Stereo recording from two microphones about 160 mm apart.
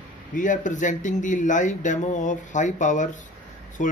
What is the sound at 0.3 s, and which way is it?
Speech, 55° left (ahead or behind).